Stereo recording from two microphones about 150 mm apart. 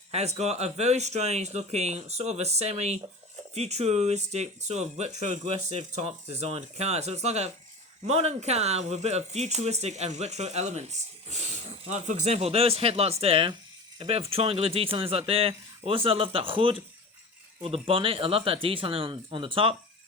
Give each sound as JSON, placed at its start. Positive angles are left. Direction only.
{"t": 0.1, "sound": "speech", "side_deg": -45}